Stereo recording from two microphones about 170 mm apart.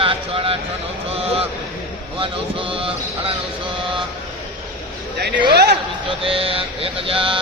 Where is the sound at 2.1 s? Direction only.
30° right (ahead or behind).